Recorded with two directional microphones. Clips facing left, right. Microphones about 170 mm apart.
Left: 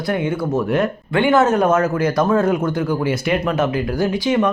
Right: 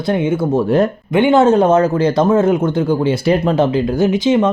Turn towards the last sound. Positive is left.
turn(degrees=-20)  # may be behind; listen again after turning